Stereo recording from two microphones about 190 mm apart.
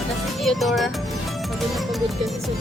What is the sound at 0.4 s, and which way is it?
Speech, centre (ahead or behind).